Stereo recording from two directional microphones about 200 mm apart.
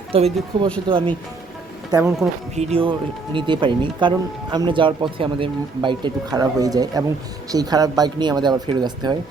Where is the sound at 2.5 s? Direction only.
30° right (ahead or behind).